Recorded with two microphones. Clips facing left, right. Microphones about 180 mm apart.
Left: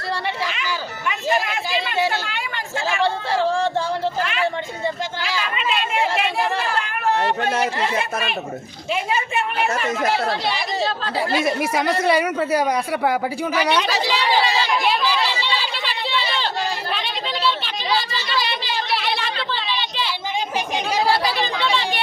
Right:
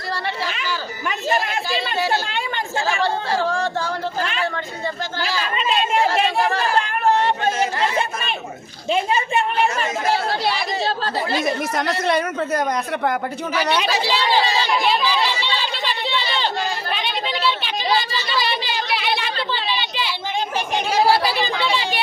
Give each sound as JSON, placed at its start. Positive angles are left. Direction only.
{"t": 1.0, "sound": "a woman's voice", "side_deg": -40}
{"t": 3.0, "sound": "speech", "side_deg": 25}
{"t": 4.2, "sound": "speech", "side_deg": -30}
{"t": 6.7, "sound": "chatter", "side_deg": -30}
{"t": 8.9, "sound": "a woman's voice", "side_deg": -30}
{"t": 11.3, "sound": "speech", "side_deg": 5}
{"t": 15.6, "sound": "chatter", "side_deg": 5}
{"t": 16.9, "sound": "a sound", "side_deg": 0}